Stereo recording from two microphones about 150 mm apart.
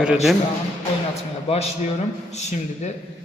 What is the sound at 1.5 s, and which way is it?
A man's voice, 45° left (ahead or behind).